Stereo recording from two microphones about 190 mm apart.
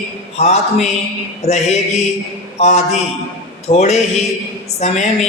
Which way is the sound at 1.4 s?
35° left (ahead or behind).